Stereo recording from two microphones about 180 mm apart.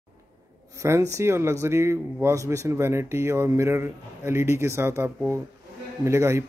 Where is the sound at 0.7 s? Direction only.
15° right (ahead or behind).